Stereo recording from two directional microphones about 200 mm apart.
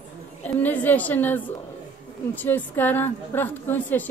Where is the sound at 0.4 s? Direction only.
10° left (ahead or behind).